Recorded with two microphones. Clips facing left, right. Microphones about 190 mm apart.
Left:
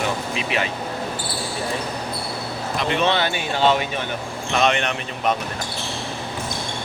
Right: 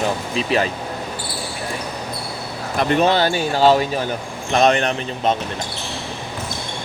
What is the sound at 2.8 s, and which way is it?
Speech, 45° right (ahead or behind).